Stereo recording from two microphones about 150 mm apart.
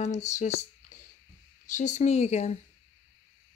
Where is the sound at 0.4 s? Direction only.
50° left (ahead or behind).